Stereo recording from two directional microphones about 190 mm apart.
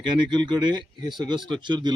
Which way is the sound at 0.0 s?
25° right (ahead or behind).